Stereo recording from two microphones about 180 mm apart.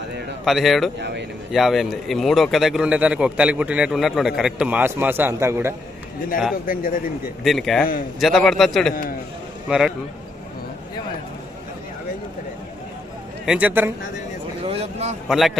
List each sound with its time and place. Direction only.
0.4 s a man's voice: centre (ahead or behind)
0.9 s speech: 70° right (ahead or behind)
1.5 s a man's voice: centre (ahead or behind)
6.7 s speech: 50° left (ahead or behind)
7.4 s a man's voice: centre (ahead or behind)
13.4 s a man's voice: 5° right (ahead or behind)
14.6 s speech: 35° right (ahead or behind)
15.3 s a man's voice: centre (ahead or behind)